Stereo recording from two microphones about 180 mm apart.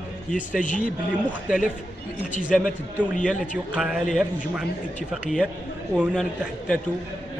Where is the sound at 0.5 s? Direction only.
45° left (ahead or behind).